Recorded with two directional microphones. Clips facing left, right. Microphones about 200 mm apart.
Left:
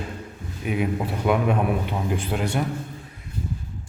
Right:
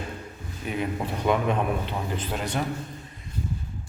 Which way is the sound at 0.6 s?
5° left (ahead or behind).